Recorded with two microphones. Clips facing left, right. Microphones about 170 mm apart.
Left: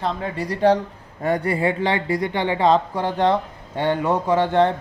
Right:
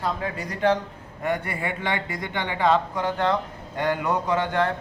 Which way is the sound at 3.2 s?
30° left (ahead or behind).